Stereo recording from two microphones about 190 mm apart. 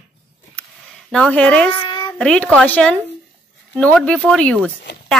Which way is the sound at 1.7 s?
25° left (ahead or behind).